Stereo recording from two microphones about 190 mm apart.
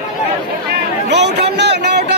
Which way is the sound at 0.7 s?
60° right (ahead or behind).